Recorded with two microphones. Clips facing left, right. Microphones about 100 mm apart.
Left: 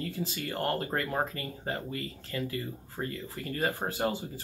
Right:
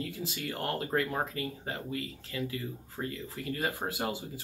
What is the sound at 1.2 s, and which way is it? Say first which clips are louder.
Speech: left 1 dB; 5° right (ahead or behind).